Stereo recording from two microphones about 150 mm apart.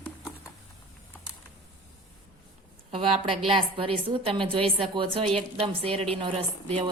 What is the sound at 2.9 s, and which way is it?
A woman's voice, 40° right (ahead or behind).